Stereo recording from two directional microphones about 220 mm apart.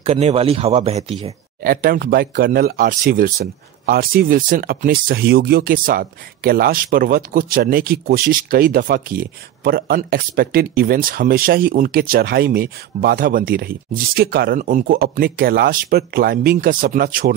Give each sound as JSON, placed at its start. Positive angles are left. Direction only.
{"t": 0.0, "sound": "speech", "side_deg": -30}
{"t": 1.6, "sound": "speech", "side_deg": -40}